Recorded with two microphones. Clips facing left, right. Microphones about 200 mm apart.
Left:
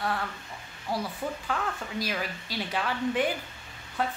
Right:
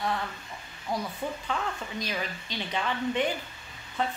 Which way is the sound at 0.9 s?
5° left (ahead or behind).